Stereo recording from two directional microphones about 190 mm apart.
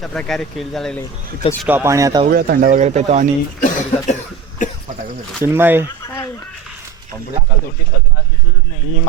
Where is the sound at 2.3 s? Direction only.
55° right (ahead or behind); by 3.3 s 35° right (ahead or behind).